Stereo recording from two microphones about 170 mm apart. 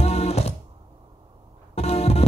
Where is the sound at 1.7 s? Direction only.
40° left (ahead or behind).